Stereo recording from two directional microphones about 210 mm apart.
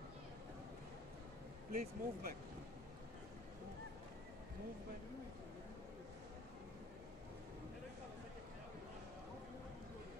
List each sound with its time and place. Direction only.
1.7 s speech: 45° right (ahead or behind)